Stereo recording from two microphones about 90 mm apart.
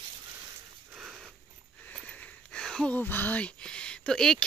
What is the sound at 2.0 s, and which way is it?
Speech, 15° left (ahead or behind).